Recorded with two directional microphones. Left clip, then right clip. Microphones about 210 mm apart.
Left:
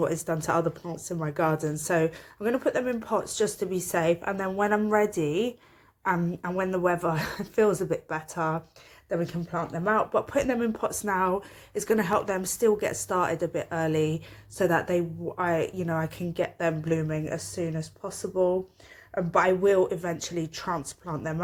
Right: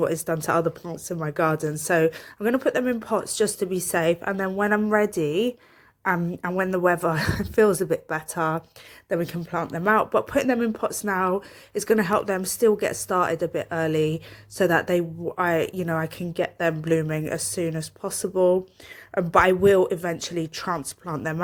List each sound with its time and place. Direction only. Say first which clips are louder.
0.0 s a woman's voice: right 3 dB; 25° right (ahead or behind)